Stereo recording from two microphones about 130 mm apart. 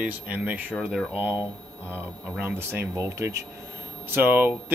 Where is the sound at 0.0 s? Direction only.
10° right (ahead or behind).